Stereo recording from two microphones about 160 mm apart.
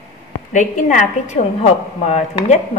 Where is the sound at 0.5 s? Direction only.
50° left (ahead or behind).